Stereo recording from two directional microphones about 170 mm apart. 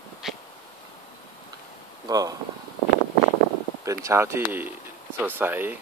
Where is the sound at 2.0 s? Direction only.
20° right (ahead or behind).